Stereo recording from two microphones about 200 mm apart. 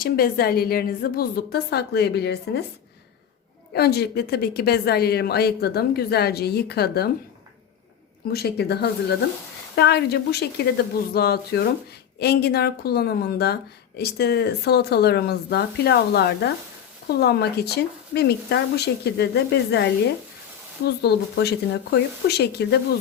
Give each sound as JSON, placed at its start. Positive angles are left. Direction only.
{"t": 0.0, "sound": "a woman's voice", "side_deg": 50}
{"t": 3.7, "sound": "a woman's voice", "side_deg": 55}
{"t": 8.3, "sound": "a woman's voice", "side_deg": 50}